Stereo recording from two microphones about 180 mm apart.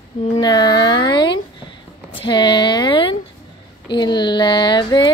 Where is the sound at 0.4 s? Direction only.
25° left (ahead or behind).